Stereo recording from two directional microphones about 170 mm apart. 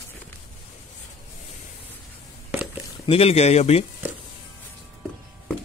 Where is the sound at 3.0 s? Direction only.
35° left (ahead or behind).